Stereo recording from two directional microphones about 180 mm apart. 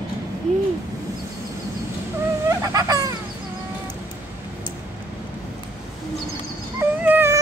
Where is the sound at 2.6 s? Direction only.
20° right (ahead or behind).